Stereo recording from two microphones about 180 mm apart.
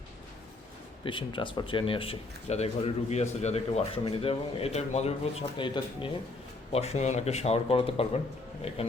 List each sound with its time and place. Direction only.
1.0 s speech: 25° left (ahead or behind)
6.7 s speech: 35° left (ahead or behind)